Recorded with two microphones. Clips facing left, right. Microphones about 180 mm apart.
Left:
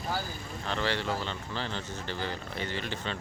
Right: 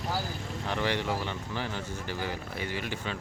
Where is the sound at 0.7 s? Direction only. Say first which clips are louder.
Right 1 dB; 15° right (ahead or behind).